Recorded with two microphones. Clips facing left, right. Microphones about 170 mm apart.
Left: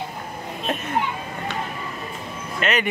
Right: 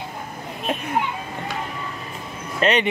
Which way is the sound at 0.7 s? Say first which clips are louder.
Right 1 dB; 10° right (ahead or behind).